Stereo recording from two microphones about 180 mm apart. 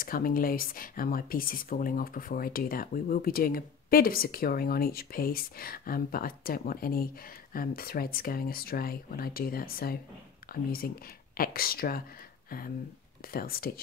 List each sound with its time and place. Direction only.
0.0 s speech: 50° left (ahead or behind)
12.4 s a sound: 55° left (ahead or behind)
13.3 s speech: 55° left (ahead or behind)